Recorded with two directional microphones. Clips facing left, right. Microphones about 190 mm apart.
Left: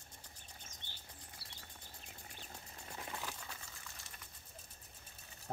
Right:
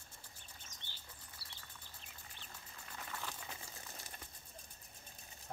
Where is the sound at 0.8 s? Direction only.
50° left (ahead or behind).